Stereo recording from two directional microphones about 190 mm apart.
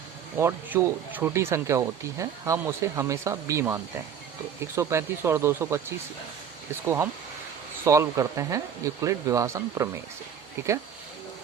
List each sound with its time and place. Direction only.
0.3 s speech: 10° right (ahead or behind)
6.8 s speech: 10° right (ahead or behind)